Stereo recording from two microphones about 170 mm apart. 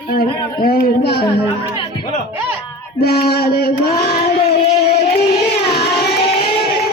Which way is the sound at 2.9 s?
65° left (ahead or behind).